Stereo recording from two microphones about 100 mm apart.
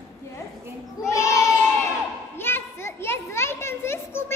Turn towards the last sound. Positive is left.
turn(degrees=25)  # may be behind; listen again after turning